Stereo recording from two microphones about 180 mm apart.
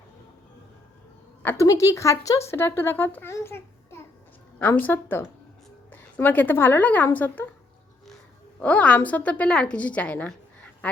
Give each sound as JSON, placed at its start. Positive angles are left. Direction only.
{"t": 1.4, "sound": "a woman's voice", "side_deg": 15}
{"t": 8.6, "sound": "a woman's voice", "side_deg": 5}